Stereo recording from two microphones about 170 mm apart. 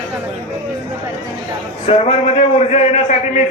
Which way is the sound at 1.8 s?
40° left (ahead or behind).